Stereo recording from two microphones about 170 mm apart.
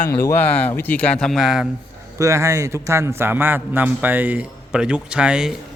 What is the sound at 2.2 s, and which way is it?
A man's voice, 20° right (ahead or behind).